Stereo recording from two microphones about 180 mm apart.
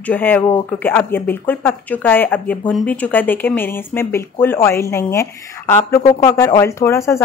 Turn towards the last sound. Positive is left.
turn(degrees=15)  # may be behind; listen again after turning